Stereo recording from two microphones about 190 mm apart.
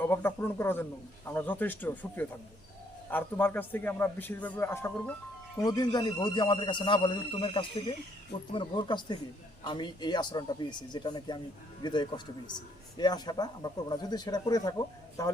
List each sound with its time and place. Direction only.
0.1 s a man's voice: 10° left (ahead or behind)